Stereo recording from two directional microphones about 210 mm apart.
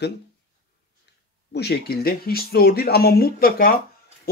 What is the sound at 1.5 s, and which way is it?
Speech, 50° left (ahead or behind).